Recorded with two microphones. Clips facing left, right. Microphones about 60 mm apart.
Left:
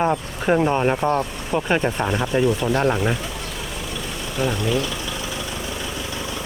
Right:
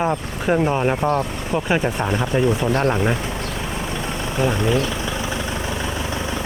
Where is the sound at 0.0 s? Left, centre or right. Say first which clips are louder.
Even; centre.